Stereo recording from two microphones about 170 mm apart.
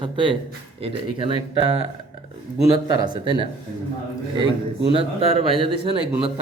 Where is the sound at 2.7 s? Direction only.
25° right (ahead or behind).